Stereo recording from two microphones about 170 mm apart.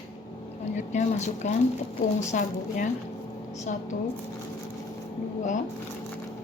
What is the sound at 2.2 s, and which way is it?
Speech, 45° left (ahead or behind).